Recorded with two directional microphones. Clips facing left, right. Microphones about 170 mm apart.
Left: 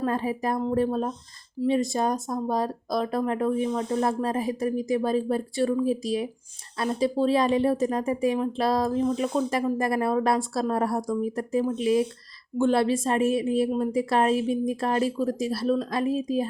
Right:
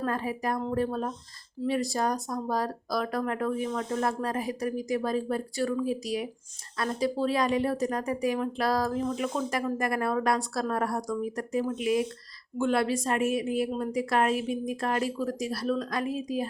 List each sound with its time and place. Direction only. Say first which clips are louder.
0.0 s a woman's voice: left 4 dB; 25° left (ahead or behind)
3.9 s a woman's voice: left 3 dB; 30° left (ahead or behind)
9.1 s a woman's voice: left 4 dB; 35° left (ahead or behind)